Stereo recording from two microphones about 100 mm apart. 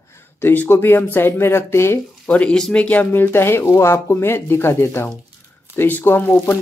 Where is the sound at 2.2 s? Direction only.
10° left (ahead or behind).